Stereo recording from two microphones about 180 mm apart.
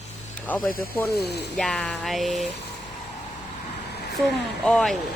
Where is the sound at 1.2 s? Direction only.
65° left (ahead or behind).